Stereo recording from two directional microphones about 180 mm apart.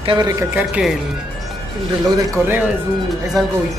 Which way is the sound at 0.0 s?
25° right (ahead or behind).